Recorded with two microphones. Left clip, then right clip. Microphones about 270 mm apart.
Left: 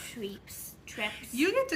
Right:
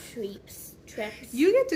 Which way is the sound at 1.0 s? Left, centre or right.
Centre.